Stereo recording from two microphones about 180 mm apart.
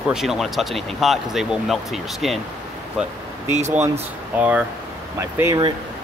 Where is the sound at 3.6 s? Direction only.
40° right (ahead or behind).